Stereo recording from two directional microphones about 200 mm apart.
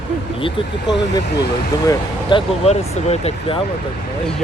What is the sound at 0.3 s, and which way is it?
Speech, 25° left (ahead or behind).